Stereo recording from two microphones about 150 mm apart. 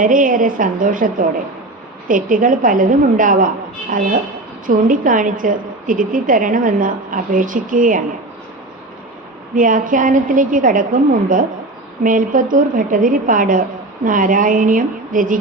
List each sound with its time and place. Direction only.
0.0 s a woman's voice: 65° right (ahead or behind)
9.6 s a woman's voice: 60° right (ahead or behind)